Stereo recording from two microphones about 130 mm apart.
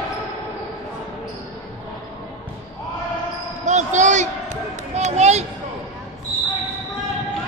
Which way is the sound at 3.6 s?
65° right (ahead or behind).